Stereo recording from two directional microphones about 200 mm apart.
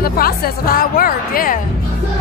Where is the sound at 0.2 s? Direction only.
45° left (ahead or behind).